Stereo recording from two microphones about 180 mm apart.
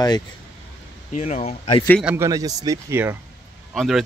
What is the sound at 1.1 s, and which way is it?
Speech, 35° left (ahead or behind).